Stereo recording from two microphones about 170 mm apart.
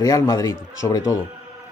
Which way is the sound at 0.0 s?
20° left (ahead or behind).